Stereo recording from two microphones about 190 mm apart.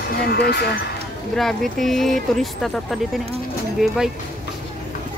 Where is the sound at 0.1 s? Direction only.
55° left (ahead or behind).